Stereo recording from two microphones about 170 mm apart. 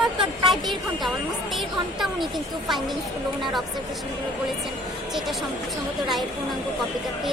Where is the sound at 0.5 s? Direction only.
Centre (ahead or behind).